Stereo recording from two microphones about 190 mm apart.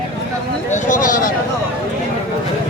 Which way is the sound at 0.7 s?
40° left (ahead or behind).